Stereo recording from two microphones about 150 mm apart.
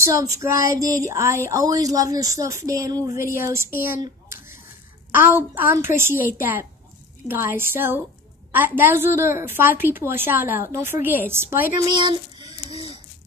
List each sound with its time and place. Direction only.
0.0 s a woman's voice: 20° right (ahead or behind)
5.1 s a woman's voice: 15° right (ahead or behind)
11.8 s speech: 30° right (ahead or behind)